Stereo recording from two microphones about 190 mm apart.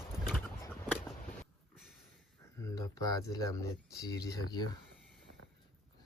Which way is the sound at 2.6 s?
20° left (ahead or behind).